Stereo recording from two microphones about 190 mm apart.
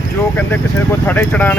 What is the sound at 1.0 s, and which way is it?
Speech, 10° left (ahead or behind).